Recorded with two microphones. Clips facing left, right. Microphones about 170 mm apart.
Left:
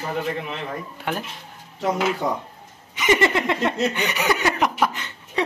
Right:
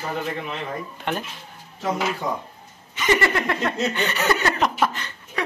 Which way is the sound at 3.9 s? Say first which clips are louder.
Even; 15° left (ahead or behind).